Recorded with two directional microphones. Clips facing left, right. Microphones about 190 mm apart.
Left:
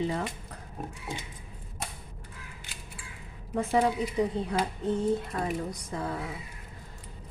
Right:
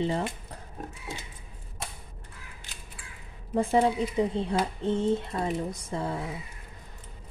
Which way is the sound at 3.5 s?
30° right (ahead or behind).